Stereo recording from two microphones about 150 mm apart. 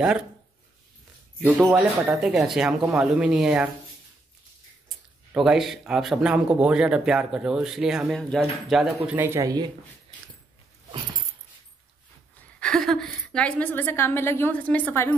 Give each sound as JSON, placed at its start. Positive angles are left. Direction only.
{"t": 1.4, "sound": "speech", "side_deg": -10}
{"t": 4.8, "sound": "speech", "side_deg": -5}
{"t": 9.0, "sound": "speech", "side_deg": -15}
{"t": 12.5, "sound": "a woman's voice", "side_deg": 5}